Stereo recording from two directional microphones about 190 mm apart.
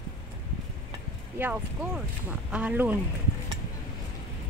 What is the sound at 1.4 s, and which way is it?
Speech, 5° right (ahead or behind).